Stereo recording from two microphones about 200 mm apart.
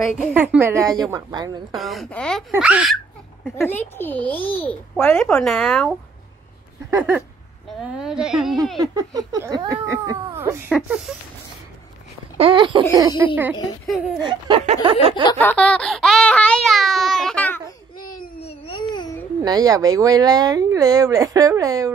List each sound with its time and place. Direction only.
0.0 s speech: 5° right (ahead or behind)
1.7 s a woman's voice: centre (ahead or behind)
2.5 s a woman's voice: 5° right (ahead or behind)
3.4 s a child's voice: 10° left (ahead or behind)
7.0 s a woman's voice: 10° right (ahead or behind)
8.7 s speech: 20° right (ahead or behind)
12.4 s speech: 25° right (ahead or behind)
13.2 s a woman's voice: 10° right (ahead or behind)
14.2 s speech: 25° right (ahead or behind)
15.3 s a sound: 5° left (ahead or behind)
18.0 s baby cry: 45° left (ahead or behind)
18.4 s baby cry: 25° left (ahead or behind)
19.4 s speech: 20° right (ahead or behind)